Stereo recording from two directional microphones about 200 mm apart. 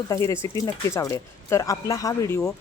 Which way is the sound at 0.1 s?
15° left (ahead or behind).